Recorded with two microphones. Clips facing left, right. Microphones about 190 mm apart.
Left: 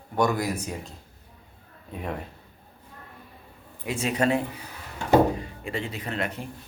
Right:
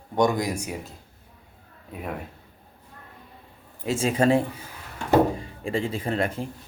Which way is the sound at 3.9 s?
25° right (ahead or behind).